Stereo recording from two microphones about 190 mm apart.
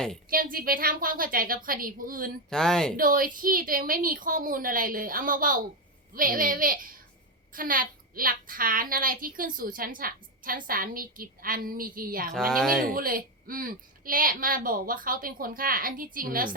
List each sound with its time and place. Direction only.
0.3 s speech: 50° right (ahead or behind)
2.5 s speech: 5° left (ahead or behind)
3.0 s speech: 45° right (ahead or behind)
12.5 s speech: 5° left (ahead or behind)
12.8 s speech: 50° right (ahead or behind)